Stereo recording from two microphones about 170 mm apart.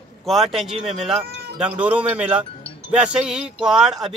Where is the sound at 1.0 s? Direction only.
Centre (ahead or behind).